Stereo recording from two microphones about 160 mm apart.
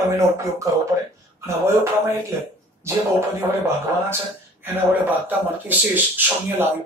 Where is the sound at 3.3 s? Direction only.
15° right (ahead or behind).